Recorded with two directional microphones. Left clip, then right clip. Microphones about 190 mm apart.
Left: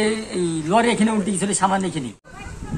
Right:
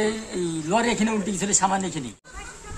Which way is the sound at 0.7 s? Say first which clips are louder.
Left 5 dB; 10° right (ahead or behind).